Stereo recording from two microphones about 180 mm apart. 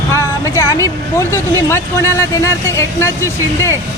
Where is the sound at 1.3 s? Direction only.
15° left (ahead or behind).